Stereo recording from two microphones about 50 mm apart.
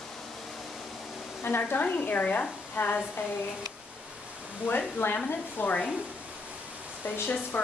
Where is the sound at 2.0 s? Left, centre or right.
Left.